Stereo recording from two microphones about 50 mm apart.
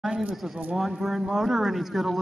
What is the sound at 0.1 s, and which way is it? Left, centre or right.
Speech, right.